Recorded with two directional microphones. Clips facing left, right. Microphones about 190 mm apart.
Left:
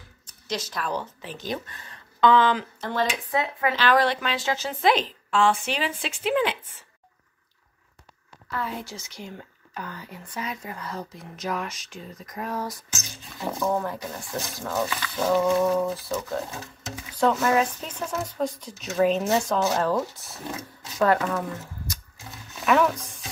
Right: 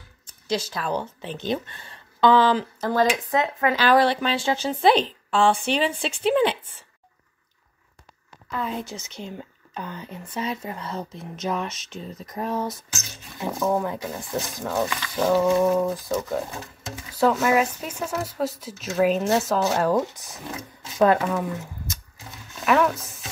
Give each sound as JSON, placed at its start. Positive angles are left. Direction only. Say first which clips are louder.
{"t": 0.3, "sound": "a woman's voice", "louder": "right 5 dB", "side_deg": -30}
{"t": 8.5, "sound": "speech", "louder": "right 3 dB", "side_deg": -20}
{"t": 13.5, "sound": "speech", "louder": "right 2 dB", "side_deg": -5}
{"t": 13.8, "sound": "speech", "louder": "right 3 dB", "side_deg": -20}
{"t": 22.7, "sound": "a sound", "louder": "right 1 dB", "side_deg": 0}